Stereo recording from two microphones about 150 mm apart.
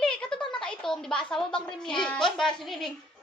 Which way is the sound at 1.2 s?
5° left (ahead or behind).